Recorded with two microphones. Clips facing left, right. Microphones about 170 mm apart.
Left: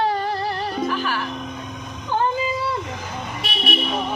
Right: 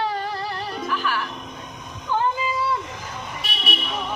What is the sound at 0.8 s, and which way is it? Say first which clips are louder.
Music: left 1 dB; 30° left (ahead or behind).